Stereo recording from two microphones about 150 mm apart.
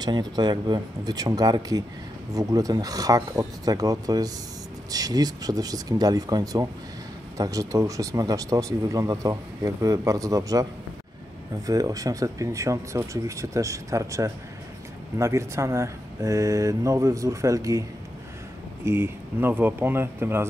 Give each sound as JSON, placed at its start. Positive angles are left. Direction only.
{"t": 0.0, "sound": "speech", "side_deg": -30}
{"t": 18.9, "sound": "speech", "side_deg": -15}